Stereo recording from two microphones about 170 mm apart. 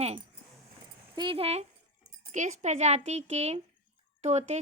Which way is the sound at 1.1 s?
30° right (ahead or behind).